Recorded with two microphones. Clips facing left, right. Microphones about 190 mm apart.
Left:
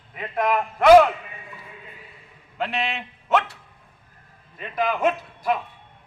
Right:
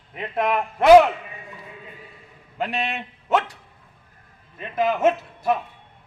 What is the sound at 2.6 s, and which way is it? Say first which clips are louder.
Speech: even; 40° right (ahead or behind).